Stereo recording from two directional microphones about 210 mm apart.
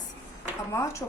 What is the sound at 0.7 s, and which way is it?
Speech, 15° left (ahead or behind).